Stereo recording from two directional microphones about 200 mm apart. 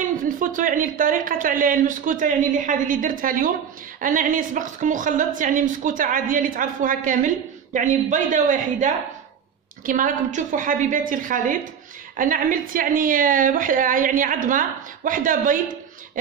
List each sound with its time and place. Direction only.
0.0 s a woman's voice: 40° right (ahead or behind)